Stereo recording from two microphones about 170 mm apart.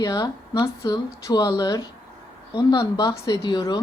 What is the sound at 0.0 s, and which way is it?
Speech, 20° left (ahead or behind).